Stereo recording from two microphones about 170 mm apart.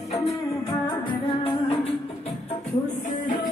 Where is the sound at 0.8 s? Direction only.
30° left (ahead or behind).